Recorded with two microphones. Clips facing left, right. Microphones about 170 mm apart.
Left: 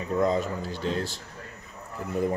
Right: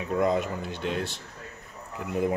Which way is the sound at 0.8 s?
70° right (ahead or behind).